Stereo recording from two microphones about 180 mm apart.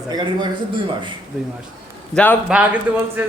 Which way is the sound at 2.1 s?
10° left (ahead or behind).